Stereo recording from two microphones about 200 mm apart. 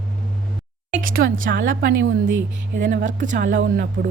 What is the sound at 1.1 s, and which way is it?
Speech, 75° right (ahead or behind).